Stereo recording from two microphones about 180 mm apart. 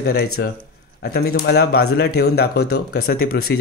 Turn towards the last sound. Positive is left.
turn(degrees=55)  # may be behind; listen again after turning